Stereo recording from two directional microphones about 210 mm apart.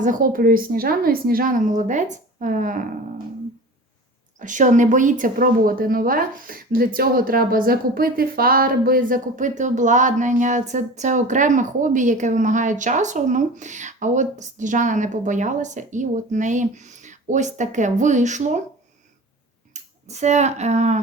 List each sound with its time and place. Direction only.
0.0 s a woman's voice: 40° right (ahead or behind)
4.4 s a woman's voice: 35° right (ahead or behind)
19.7 s speech: 35° right (ahead or behind)